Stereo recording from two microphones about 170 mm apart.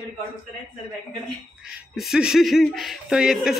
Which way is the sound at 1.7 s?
Centre (ahead or behind).